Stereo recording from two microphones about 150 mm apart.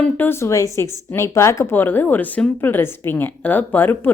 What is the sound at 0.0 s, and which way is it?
Speech, 15° left (ahead or behind).